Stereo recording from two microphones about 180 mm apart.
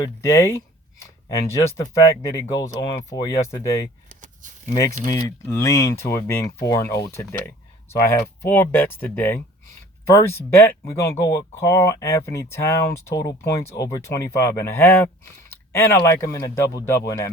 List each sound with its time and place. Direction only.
0.0 s speech: 15° left (ahead or behind)